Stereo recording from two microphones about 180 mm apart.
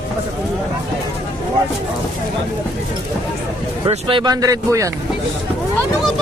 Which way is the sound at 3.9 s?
30° right (ahead or behind).